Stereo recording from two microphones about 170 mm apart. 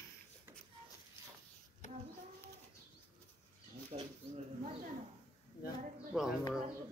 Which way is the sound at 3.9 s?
40° right (ahead or behind).